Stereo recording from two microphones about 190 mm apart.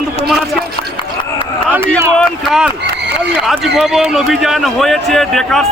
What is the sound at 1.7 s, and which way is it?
Speech, 10° right (ahead or behind).